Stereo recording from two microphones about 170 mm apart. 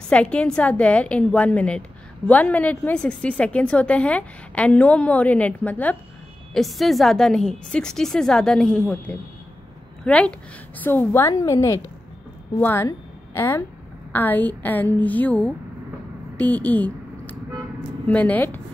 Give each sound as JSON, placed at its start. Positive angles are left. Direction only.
{"t": 0.1, "sound": "a woman's voice", "side_deg": 5}
{"t": 16.3, "sound": "a sound", "side_deg": 10}
{"t": 18.0, "sound": "a woman's voice", "side_deg": 10}